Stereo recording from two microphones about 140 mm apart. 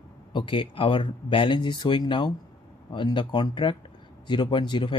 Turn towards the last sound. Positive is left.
turn(degrees=35)  # may be behind; listen again after turning